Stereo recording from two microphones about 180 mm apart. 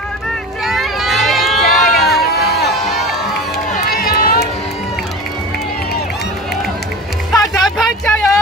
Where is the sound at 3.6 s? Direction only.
50° left (ahead or behind).